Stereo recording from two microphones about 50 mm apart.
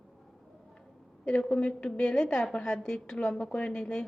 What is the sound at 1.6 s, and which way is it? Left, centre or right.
A woman's voice, left.